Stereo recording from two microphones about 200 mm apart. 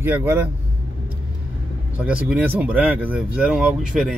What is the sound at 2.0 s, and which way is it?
Speech, 5° right (ahead or behind).